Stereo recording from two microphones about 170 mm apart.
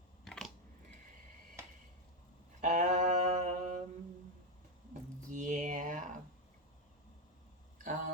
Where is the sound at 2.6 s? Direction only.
45° right (ahead or behind).